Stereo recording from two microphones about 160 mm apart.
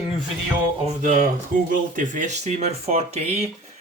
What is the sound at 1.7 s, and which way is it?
A man's voice, 55° right (ahead or behind).